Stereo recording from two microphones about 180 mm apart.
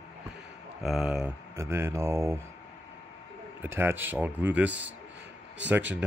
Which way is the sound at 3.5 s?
10° right (ahead or behind).